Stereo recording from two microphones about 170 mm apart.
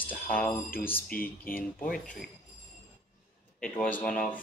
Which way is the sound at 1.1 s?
55° left (ahead or behind).